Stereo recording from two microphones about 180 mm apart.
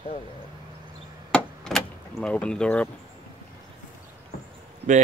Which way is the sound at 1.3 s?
5° left (ahead or behind).